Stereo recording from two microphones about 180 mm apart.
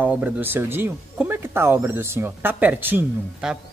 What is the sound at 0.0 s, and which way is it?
Speech, 10° right (ahead or behind).